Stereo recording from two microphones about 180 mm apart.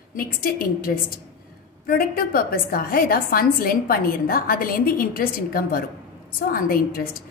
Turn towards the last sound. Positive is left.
turn(degrees=55)  # may be behind; listen again after turning